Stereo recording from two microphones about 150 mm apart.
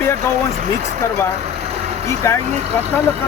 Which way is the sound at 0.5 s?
45° right (ahead or behind).